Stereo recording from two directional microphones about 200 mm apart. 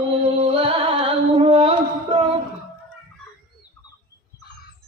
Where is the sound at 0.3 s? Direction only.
25° right (ahead or behind).